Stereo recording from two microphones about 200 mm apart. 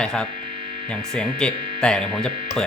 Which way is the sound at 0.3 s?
25° right (ahead or behind).